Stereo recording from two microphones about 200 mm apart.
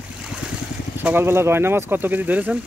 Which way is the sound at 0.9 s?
10° right (ahead or behind).